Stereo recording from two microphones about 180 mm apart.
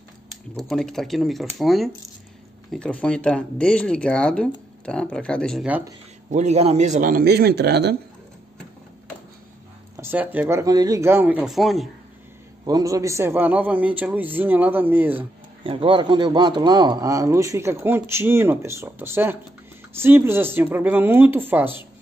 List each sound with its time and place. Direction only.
0.3 s speech: centre (ahead or behind)
6.3 s a man's voice: 40° right (ahead or behind); by 8.0 s 65° right (ahead or behind)
9.9 s a man's voice: 10° right (ahead or behind)
12.6 s a man's voice: 20° right (ahead or behind)
15.6 s a man's voice: 30° right (ahead or behind); by 21.8 s 10° right (ahead or behind)